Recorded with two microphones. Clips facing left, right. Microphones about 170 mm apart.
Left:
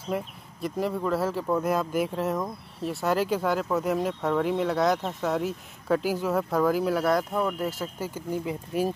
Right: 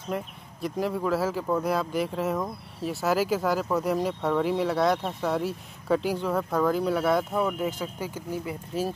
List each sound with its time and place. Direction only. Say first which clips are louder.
0.1 s speech: left 1 dB; centre (ahead or behind)
8.5 s speech: left 3 dB; 15° left (ahead or behind)